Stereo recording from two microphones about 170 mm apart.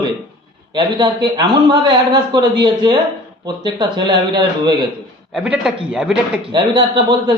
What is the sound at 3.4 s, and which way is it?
Speech, 25° right (ahead or behind).